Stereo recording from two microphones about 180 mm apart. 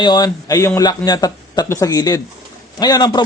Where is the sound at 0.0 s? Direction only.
20° left (ahead or behind).